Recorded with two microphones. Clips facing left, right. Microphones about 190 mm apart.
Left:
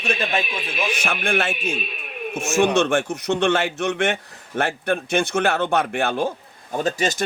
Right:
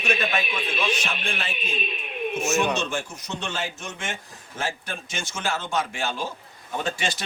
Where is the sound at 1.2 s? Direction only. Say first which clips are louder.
Left 9 dB; 80° left; by 6.3 s 60° left (ahead or behind).